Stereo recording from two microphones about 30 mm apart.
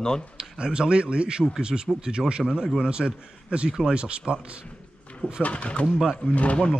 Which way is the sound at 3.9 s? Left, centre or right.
Right.